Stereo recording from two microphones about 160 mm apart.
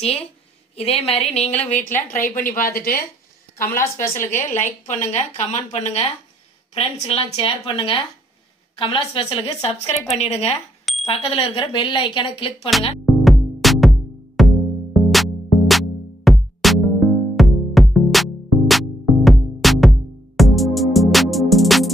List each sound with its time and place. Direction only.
0.7 s a woman's voice: 40° left (ahead or behind)
1.9 s a woman's voice: 10° left (ahead or behind)
2.2 s a woman's voice: 60° left (ahead or behind)
4.3 s a woman's voice: 50° left (ahead or behind); by 12.5 s 30° left (ahead or behind)
13.0 s music: centre (ahead or behind)